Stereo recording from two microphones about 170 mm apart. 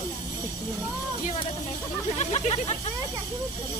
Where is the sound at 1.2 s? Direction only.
35° left (ahead or behind).